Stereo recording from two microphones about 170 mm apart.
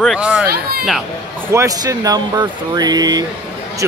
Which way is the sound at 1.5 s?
20° right (ahead or behind).